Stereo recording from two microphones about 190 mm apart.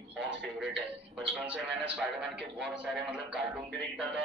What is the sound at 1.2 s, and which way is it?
A man's voice, 5° right (ahead or behind).